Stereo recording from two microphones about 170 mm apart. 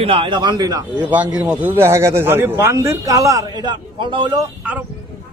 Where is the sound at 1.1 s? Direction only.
10° right (ahead or behind); by 4.4 s 25° right (ahead or behind).